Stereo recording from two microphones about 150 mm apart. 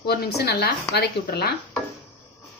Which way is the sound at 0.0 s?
90° left.